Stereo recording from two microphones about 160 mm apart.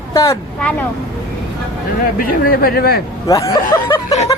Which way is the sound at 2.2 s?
65° left (ahead or behind).